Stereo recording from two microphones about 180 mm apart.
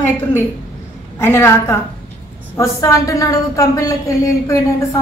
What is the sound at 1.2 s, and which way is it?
A man's voice, 15° left (ahead or behind).